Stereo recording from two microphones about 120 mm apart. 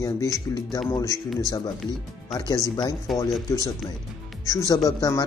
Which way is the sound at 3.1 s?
Centre (ahead or behind).